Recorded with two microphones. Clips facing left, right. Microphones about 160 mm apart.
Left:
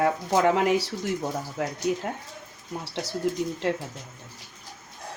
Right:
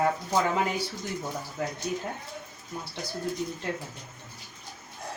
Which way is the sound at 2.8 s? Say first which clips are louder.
Left 6 dB; 80° left.